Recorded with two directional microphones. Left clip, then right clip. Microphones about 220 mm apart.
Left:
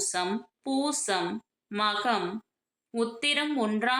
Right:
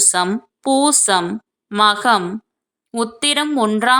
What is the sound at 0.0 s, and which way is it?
A woman's voice, 45° right (ahead or behind).